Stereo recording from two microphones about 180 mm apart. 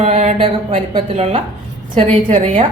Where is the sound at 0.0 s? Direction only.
35° right (ahead or behind).